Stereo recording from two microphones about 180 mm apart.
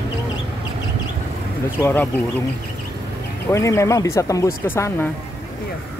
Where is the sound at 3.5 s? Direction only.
15° left (ahead or behind).